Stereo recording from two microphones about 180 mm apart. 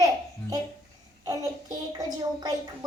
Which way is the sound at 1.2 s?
20° right (ahead or behind).